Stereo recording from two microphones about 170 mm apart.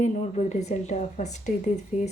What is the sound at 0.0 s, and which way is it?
A woman's voice, 40° left (ahead or behind).